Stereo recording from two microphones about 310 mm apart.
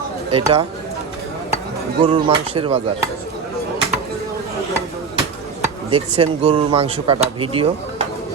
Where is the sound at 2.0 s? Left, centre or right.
Centre.